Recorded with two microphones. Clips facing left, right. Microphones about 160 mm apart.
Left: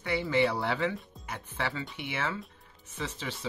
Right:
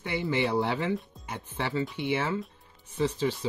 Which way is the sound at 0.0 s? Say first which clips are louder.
Left 1 dB; 25° right (ahead or behind).